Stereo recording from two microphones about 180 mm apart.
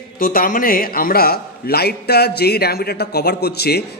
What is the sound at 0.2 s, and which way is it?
A man's voice, 50° left (ahead or behind).